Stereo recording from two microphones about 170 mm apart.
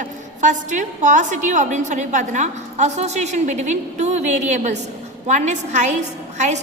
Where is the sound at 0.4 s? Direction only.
45° right (ahead or behind).